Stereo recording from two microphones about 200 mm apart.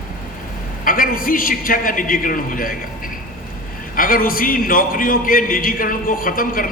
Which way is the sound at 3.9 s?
45° left (ahead or behind).